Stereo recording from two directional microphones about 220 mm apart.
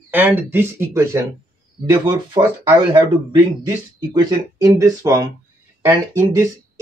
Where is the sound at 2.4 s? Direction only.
15° right (ahead or behind).